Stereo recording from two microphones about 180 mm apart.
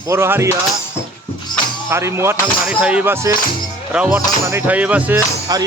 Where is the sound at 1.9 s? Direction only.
15° right (ahead or behind).